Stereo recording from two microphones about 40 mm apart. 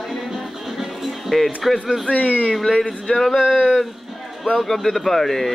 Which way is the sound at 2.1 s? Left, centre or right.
Left.